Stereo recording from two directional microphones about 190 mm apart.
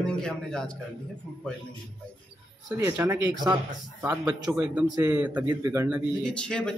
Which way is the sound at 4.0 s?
5° right (ahead or behind).